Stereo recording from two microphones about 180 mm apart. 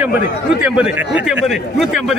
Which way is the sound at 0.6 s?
5° right (ahead or behind).